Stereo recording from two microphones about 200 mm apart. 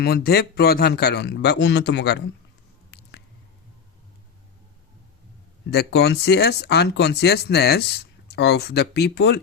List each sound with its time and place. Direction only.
0.0 s speech: 50° left (ahead or behind)
2.9 s squish: 60° left (ahead or behind)
5.7 s speech: 55° left (ahead or behind)